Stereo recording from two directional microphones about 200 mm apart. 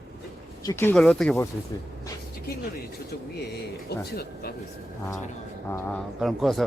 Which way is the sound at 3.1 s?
55° left (ahead or behind).